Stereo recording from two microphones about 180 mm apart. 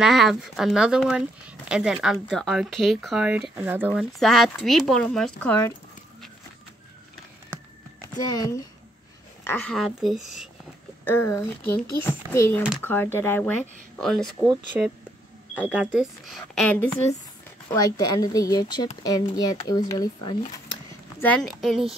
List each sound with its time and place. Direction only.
0.0 s speech: centre (ahead or behind)
8.1 s speech: 20° left (ahead or behind)
9.4 s speech: 10° left (ahead or behind)
11.1 s speech: 10° left (ahead or behind)
17.7 s speech: 20° left (ahead or behind)
21.2 s speech: 5° left (ahead or behind)